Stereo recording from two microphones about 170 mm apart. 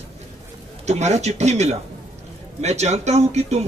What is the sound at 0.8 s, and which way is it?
A man's voice, 40° right (ahead or behind).